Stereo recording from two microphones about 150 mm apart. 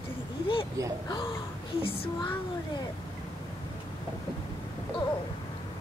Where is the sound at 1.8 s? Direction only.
40° left (ahead or behind).